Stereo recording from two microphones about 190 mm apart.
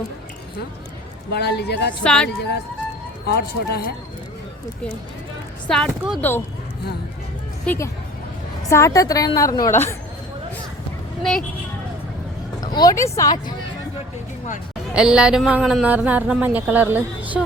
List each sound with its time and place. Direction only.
1.3 s a man's voice: 60° left (ahead or behind)
2.0 s speech: 5° left (ahead or behind)
3.2 s a man's voice: 55° left (ahead or behind)
5.6 s speech: 5° left (ahead or behind)
7.6 s a woman's voice: 10° left (ahead or behind)
11.2 s speech: centre (ahead or behind)
12.5 s speech: 20° left (ahead or behind)
14.9 s a woman's voice: 5° right (ahead or behind)